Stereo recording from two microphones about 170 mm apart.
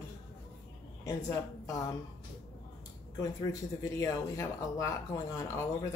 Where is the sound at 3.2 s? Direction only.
20° left (ahead or behind).